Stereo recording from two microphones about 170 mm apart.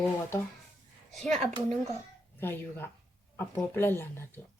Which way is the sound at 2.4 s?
10° left (ahead or behind).